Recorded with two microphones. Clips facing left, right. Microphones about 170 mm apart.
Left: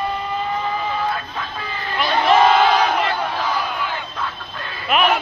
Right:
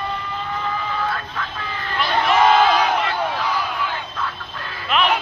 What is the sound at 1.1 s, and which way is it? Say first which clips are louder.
Vehicle: left 1 dB; 15° left (ahead or behind).